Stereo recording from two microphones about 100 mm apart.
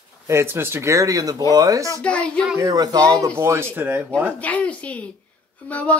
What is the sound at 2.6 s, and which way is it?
Speech, 40° right (ahead or behind).